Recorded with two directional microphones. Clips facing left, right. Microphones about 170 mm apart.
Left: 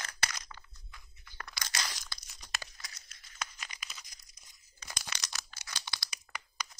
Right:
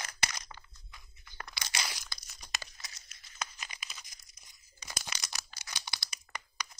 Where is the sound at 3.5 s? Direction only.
25° right (ahead or behind).